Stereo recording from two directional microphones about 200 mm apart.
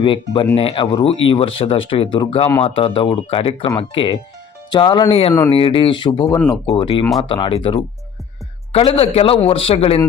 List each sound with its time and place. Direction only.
0.0 s a man's voice: 25° left (ahead or behind)